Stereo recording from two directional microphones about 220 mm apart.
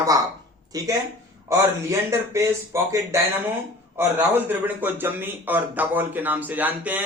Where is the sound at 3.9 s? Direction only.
10° right (ahead or behind).